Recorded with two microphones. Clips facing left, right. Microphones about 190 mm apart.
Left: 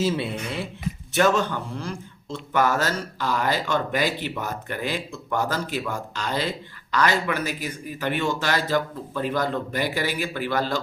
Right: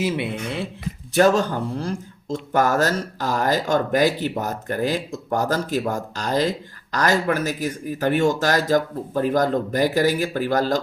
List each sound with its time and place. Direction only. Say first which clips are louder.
0.0 s speech: right 1 dB; 20° right (ahead or behind)
1.1 s speech: right 4 dB; 40° right (ahead or behind)